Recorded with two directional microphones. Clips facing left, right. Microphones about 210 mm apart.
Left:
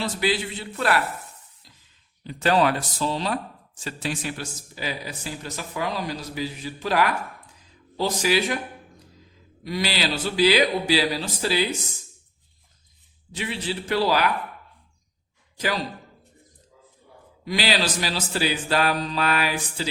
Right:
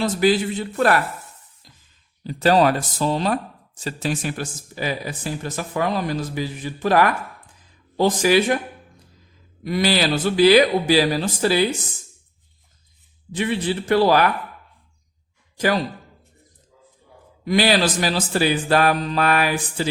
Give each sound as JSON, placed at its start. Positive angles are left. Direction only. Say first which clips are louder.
{"t": 0.0, "sound": "a man's voice", "louder": "right 7 dB", "side_deg": -45}
{"t": 2.2, "sound": "a man's voice", "louder": "right 4 dB", "side_deg": -40}
{"t": 9.6, "sound": "a man's voice", "louder": "right 6 dB", "side_deg": -55}
{"t": 13.3, "sound": "a man's voice", "louder": "right 7 dB", "side_deg": -50}
{"t": 15.5, "sound": "a man's voice", "louder": "right 7 dB", "side_deg": -50}
{"t": 17.4, "sound": "a man's voice", "louder": "right 7 dB", "side_deg": -50}